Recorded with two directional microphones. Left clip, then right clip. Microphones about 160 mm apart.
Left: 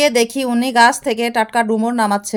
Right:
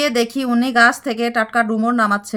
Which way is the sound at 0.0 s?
25° left (ahead or behind).